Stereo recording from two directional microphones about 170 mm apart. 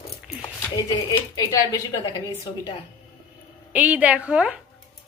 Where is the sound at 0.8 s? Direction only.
20° left (ahead or behind).